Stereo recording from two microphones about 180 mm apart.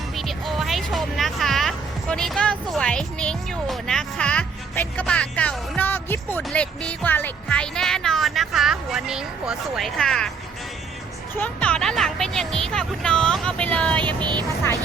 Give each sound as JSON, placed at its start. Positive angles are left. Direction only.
{"t": 0.2, "sound": "speech", "side_deg": 0}
{"t": 11.3, "sound": "speech", "side_deg": 5}
{"t": 14.2, "sound": "speech", "side_deg": -25}